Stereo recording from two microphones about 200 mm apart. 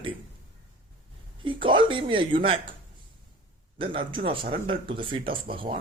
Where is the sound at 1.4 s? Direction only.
25° right (ahead or behind).